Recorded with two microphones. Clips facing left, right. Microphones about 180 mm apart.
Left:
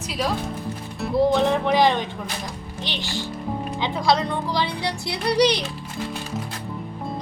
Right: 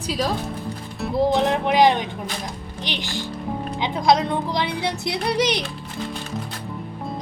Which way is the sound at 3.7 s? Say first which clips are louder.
Right 3 dB; 20° right (ahead or behind).